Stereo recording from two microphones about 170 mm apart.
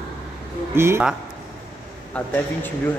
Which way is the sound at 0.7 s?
15° right (ahead or behind).